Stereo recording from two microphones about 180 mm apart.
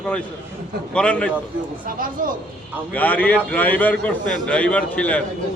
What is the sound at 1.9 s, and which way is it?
Speech, 50° right (ahead or behind).